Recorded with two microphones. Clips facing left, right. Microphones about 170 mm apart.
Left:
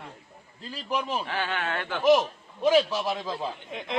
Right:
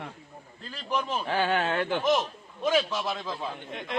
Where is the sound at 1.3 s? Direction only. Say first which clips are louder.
Right 4 dB; 40° right (ahead or behind).